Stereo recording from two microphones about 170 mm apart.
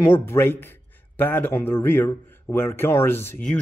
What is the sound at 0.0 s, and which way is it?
A man's voice, 15° left (ahead or behind).